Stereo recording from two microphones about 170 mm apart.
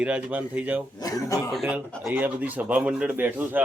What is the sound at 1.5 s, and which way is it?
Speech, centre (ahead or behind).